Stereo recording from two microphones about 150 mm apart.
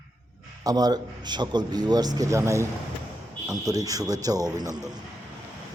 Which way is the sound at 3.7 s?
25° right (ahead or behind).